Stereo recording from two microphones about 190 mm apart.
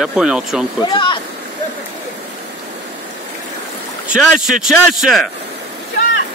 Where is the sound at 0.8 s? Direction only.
25° left (ahead or behind).